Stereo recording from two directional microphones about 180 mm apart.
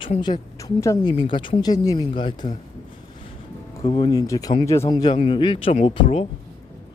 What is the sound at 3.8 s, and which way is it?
Speech, 30° left (ahead or behind).